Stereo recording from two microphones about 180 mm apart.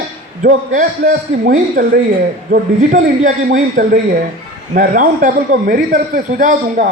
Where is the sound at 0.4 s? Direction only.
45° right (ahead or behind).